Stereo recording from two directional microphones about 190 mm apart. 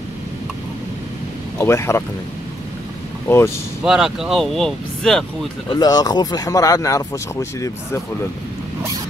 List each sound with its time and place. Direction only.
1.6 s speech: 15° left (ahead or behind)
3.3 s speech: 15° left (ahead or behind)
3.8 s speech: 5° right (ahead or behind)
5.7 s speech: 20° left (ahead or behind)